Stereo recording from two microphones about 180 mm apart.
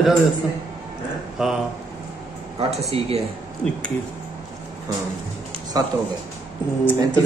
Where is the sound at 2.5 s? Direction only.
35° right (ahead or behind).